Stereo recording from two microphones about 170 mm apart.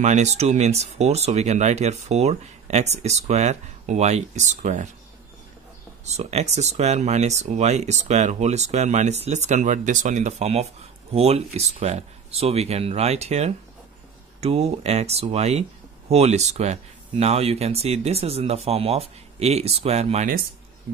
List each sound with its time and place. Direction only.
0.0 s speech: 45° right (ahead or behind)
6.0 s speech: 40° right (ahead or behind)